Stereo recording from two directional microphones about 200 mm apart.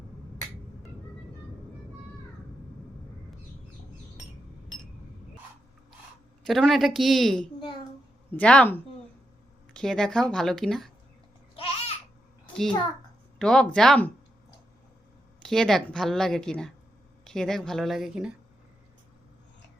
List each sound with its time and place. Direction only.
6.4 s a woman's voice: centre (ahead or behind)
11.5 s babbling: 30° left (ahead or behind)
13.4 s a woman's voice: 5° left (ahead or behind)
15.4 s a woman's voice: centre (ahead or behind)